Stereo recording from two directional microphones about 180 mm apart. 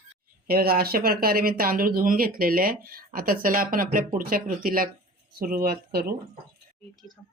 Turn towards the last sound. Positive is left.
turn(degrees=-60)  # may be behind; listen again after turning